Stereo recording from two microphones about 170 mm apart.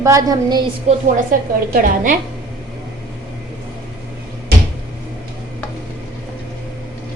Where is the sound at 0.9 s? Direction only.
45° right (ahead or behind).